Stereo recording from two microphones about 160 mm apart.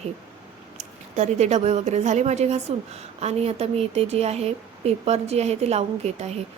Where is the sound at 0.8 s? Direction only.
45° right (ahead or behind).